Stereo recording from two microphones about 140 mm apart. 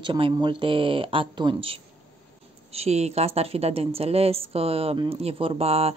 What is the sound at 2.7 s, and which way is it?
A woman's voice, 50° right (ahead or behind).